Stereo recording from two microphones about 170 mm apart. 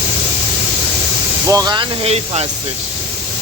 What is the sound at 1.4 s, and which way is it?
Speech, 20° right (ahead or behind).